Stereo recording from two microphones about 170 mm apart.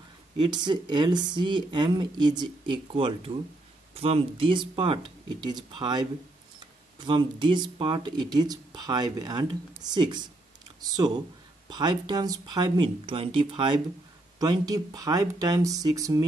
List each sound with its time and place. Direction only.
0.4 s speech: 25° right (ahead or behind)
7.1 s speech: 30° right (ahead or behind)
11.7 s speech: 25° right (ahead or behind)